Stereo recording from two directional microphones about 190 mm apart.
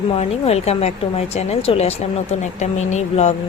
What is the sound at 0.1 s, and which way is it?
Speech, 30° left (ahead or behind).